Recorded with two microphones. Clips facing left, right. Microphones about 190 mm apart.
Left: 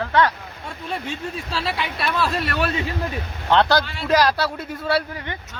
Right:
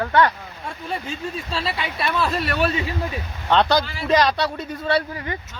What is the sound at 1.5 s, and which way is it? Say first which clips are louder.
Speech: left 1 dB; centre (ahead or behind).